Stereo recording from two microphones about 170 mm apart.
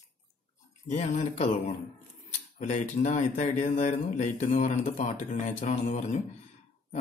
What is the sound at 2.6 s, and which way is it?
A man's voice, 45° left (ahead or behind).